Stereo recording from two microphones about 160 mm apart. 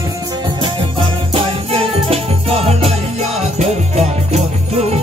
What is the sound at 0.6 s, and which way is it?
Music, 35° right (ahead or behind).